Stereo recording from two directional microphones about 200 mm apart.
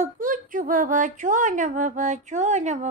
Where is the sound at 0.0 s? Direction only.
40° right (ahead or behind).